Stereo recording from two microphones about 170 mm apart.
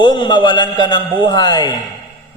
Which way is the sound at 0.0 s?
25° left (ahead or behind).